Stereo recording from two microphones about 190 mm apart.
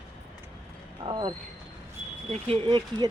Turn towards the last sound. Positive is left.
turn(degrees=-25)  # may be behind; listen again after turning